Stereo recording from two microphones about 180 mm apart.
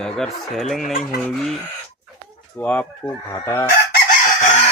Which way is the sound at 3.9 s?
45° left (ahead or behind).